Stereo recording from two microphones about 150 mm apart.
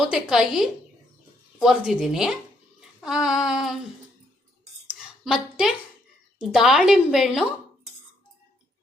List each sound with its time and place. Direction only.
0.0 s a woman's voice: 5° right (ahead or behind)
5.2 s a woman's voice: centre (ahead or behind)